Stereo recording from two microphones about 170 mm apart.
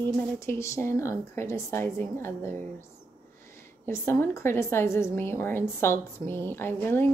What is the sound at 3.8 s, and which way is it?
A woman's voice, 15° left (ahead or behind).